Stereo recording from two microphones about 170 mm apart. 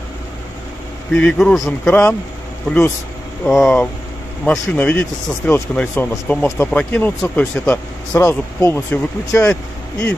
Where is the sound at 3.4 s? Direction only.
5° left (ahead or behind).